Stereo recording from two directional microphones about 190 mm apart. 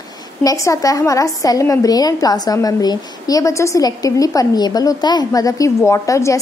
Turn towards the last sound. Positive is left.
turn(degrees=15)  # may be behind; listen again after turning